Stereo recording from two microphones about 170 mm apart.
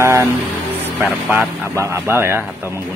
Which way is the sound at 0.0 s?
15° right (ahead or behind).